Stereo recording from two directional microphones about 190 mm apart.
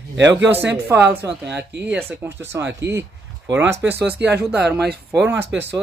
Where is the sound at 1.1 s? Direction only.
60° right (ahead or behind).